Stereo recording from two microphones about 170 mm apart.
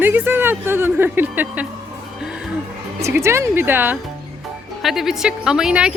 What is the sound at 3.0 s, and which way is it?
A woman's voice, 15° right (ahead or behind).